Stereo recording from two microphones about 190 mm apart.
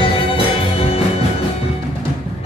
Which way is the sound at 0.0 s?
30° left (ahead or behind).